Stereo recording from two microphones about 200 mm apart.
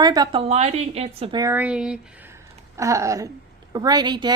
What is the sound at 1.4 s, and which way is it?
A woman's voice, 10° right (ahead or behind).